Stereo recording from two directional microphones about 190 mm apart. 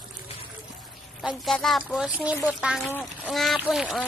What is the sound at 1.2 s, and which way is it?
A woman's voice, centre (ahead or behind).